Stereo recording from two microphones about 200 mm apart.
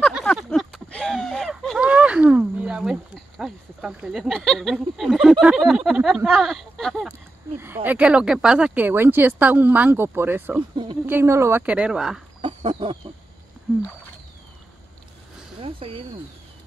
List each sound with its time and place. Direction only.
0.2 s a sound: 5° left (ahead or behind)
7.1 s speech: 10° right (ahead or behind)
12.4 s fowl: 25° right (ahead or behind)
15.6 s speech: 25° right (ahead or behind)